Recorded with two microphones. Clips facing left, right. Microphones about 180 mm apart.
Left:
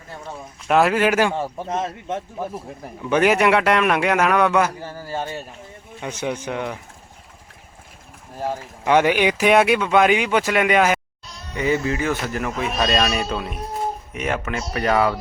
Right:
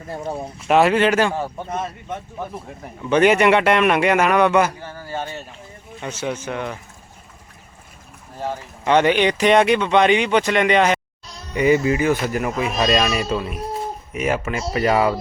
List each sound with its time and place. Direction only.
0.1 s speech: 35° right (ahead or behind)
0.7 s speech: centre (ahead or behind)
3.1 s speech: 5° left (ahead or behind)
6.0 s speech: 15° left (ahead or behind)
8.4 s speech: 10° left (ahead or behind)
11.5 s speech: 15° right (ahead or behind)